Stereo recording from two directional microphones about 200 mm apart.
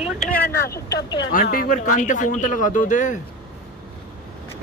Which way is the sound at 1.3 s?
45° left (ahead or behind).